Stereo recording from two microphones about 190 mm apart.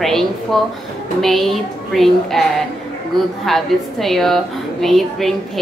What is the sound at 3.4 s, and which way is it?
A woman's voice, centre (ahead or behind).